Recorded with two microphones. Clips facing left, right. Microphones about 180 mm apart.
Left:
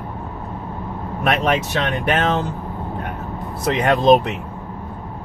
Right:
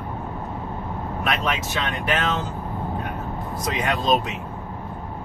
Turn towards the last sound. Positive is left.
turn(degrees=60)  # may be behind; listen again after turning